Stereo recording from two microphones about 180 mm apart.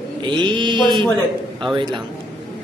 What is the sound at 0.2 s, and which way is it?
Mantra, 25° right (ahead or behind).